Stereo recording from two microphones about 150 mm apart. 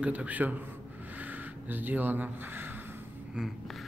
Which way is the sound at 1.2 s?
10° right (ahead or behind).